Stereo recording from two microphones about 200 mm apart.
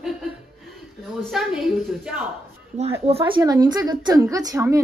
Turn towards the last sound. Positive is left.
turn(degrees=-15)  # may be behind; listen again after turning